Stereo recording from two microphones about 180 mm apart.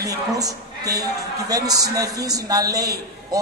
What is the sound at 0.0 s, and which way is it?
A man's voice, 20° right (ahead or behind).